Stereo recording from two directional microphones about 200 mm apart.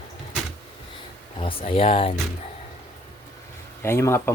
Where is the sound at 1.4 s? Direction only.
25° left (ahead or behind).